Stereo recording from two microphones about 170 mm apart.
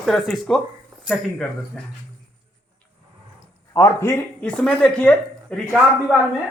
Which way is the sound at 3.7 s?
20° left (ahead or behind).